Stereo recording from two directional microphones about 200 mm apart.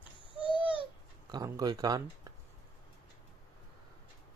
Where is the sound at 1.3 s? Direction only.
20° right (ahead or behind).